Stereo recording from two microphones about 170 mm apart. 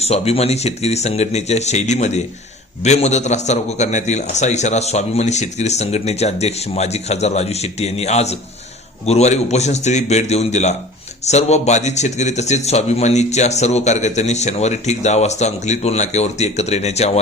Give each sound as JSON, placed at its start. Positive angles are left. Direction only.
{"t": 0.0, "sound": "a man's voice", "side_deg": 35}